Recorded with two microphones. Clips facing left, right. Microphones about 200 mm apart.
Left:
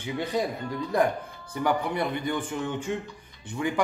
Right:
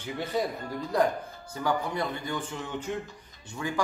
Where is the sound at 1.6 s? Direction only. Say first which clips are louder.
Left 3 dB; 20° left (ahead or behind).